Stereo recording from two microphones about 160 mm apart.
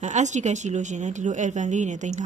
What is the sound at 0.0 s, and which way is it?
Speech, 50° right (ahead or behind).